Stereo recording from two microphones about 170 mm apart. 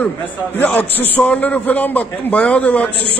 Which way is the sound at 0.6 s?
10° left (ahead or behind).